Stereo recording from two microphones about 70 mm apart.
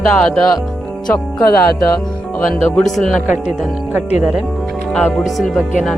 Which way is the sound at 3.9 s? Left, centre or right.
Centre.